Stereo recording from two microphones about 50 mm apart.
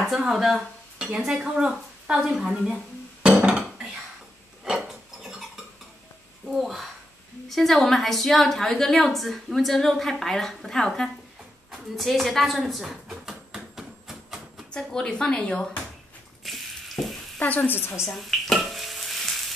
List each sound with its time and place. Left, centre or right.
0.1 s speech: centre
3.4 s dishes: centre
4.8 s a sound: centre
6.5 s a woman's voice: centre
12.8 s a sound: centre
14.7 s speech: centre
16.4 s a sound: centre
17.4 s a woman's voice: left
18.0 s stir: centre